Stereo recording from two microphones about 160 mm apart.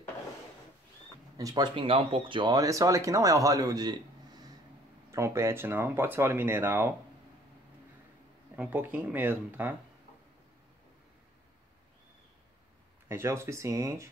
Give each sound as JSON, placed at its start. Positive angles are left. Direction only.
{"t": 1.4, "sound": "speech", "side_deg": -25}
{"t": 5.1, "sound": "speech", "side_deg": -15}
{"t": 8.5, "sound": "speech", "side_deg": -10}
{"t": 13.1, "sound": "speech", "side_deg": -15}